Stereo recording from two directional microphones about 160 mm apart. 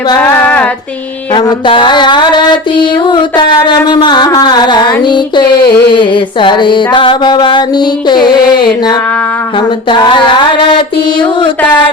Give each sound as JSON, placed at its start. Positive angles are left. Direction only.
{"t": 0.2, "sound": "female singing", "side_deg": 10}
{"t": 1.3, "sound": "mantra", "side_deg": 30}